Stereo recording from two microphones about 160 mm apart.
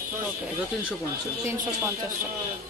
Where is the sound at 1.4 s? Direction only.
15° right (ahead or behind).